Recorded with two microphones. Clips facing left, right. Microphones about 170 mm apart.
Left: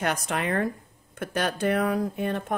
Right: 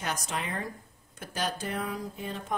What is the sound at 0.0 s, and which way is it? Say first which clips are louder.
A woman's voice: left 7 dB; 60° left (ahead or behind).